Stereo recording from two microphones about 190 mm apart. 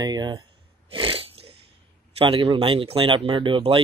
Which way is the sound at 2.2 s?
30° right (ahead or behind).